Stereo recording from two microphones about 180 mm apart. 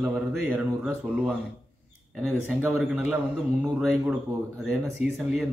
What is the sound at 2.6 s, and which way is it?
Speech, 5° right (ahead or behind).